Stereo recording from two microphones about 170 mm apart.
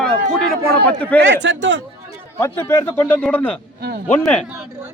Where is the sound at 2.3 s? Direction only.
15° left (ahead or behind).